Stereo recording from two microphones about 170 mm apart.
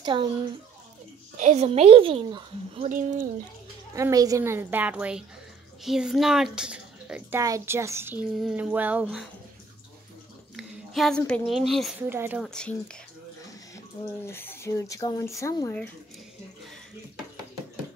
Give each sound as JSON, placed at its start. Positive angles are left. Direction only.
{"t": 0.0, "sound": "speech", "side_deg": -25}
{"t": 1.3, "sound": "a woman's voice", "side_deg": -40}
{"t": 2.9, "sound": "speech", "side_deg": -50}
{"t": 3.9, "sound": "a child's voice", "side_deg": -20}
{"t": 10.5, "sound": "speech", "side_deg": 0}
{"t": 12.1, "sound": "a child's voice", "side_deg": -10}
{"t": 12.4, "sound": "speech", "side_deg": 5}
{"t": 14.2, "sound": "speech", "side_deg": 15}